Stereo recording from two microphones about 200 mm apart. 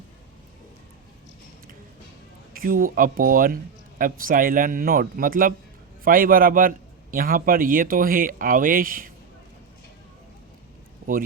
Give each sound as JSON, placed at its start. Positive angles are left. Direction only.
{"t": 2.5, "sound": "a man's voice", "side_deg": -45}